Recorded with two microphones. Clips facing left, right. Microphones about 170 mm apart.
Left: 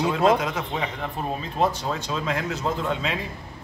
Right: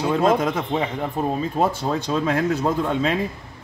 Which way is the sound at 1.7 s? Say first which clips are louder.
Right 5 dB; 55° right (ahead or behind).